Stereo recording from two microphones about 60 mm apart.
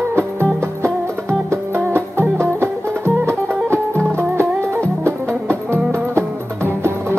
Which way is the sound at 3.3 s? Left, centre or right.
Right.